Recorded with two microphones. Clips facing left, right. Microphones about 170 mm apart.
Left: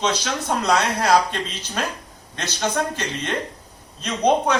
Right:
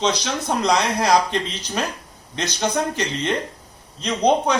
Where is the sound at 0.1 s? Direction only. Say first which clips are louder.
Right 1 dB; 15° right (ahead or behind).